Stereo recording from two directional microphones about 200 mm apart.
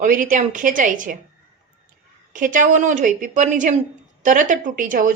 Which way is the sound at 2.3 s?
40° right (ahead or behind).